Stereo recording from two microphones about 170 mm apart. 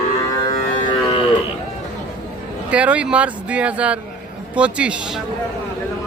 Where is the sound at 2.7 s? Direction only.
5° right (ahead or behind).